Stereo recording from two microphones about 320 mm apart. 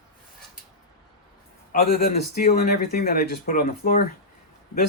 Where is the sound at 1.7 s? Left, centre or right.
Left.